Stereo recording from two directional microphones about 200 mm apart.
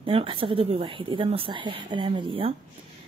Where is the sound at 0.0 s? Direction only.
25° right (ahead or behind).